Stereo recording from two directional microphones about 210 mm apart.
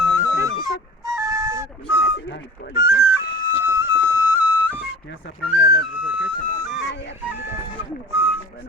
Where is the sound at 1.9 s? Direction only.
60° left (ahead or behind).